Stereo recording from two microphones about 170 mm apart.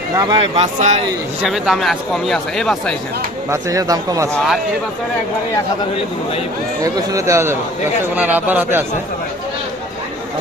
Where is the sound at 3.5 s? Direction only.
20° right (ahead or behind).